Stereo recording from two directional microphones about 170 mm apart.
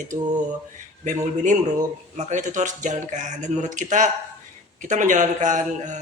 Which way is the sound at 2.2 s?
45° right (ahead or behind).